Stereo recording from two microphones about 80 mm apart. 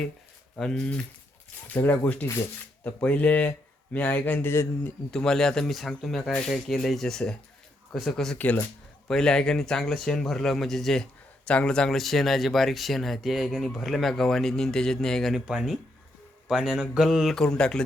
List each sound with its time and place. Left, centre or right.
0.5 s speech: centre
1.7 s a man's voice: left
5.1 s speech: centre
17.3 s speech: centre